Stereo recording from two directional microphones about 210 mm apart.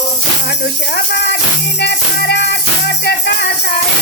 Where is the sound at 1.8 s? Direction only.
55° left (ahead or behind).